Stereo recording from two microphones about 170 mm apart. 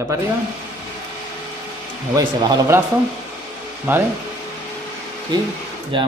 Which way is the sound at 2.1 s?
25° right (ahead or behind).